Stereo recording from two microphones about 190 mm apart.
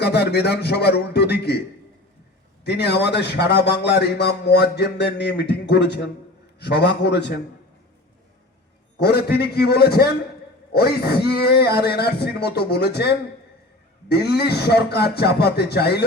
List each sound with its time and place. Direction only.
0.0 s a man's voice: 60° left (ahead or behind)
2.6 s a man's voice: 60° left (ahead or behind)
9.0 s a man's voice: 60° left (ahead or behind)